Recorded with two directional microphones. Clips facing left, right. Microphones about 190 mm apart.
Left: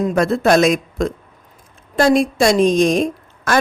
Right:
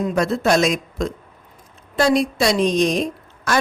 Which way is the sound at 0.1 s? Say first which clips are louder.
Left 3 dB; 55° left (ahead or behind).